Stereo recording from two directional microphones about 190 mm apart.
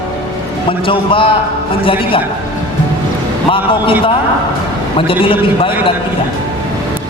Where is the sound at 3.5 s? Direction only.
30° left (ahead or behind).